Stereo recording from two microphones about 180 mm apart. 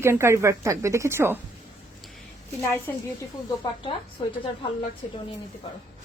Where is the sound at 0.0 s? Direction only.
15° right (ahead or behind).